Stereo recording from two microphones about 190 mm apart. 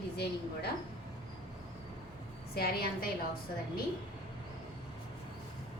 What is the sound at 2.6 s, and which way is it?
Speech, 55° left (ahead or behind).